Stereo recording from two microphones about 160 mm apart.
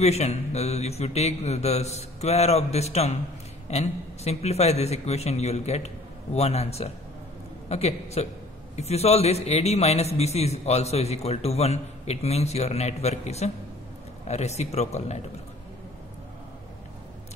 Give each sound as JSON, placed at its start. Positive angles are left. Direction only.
{"t": 0.0, "sound": "a man's voice", "side_deg": 40}